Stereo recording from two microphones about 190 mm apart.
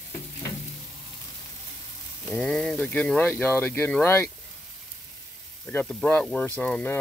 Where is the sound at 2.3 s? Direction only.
5° left (ahead or behind).